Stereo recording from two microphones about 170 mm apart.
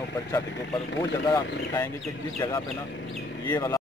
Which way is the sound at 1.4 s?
90° left.